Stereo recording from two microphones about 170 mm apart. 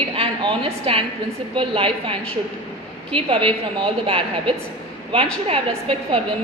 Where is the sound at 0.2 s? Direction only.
30° right (ahead or behind).